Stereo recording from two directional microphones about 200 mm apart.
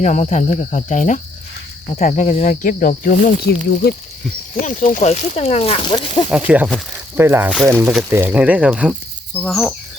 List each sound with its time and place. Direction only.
0.0 s speech: 35° left (ahead or behind); by 3.9 s 55° left (ahead or behind)
4.5 s speech: 45° left (ahead or behind); by 6.2 s 20° left (ahead or behind)
6.3 s speech: 5° right (ahead or behind)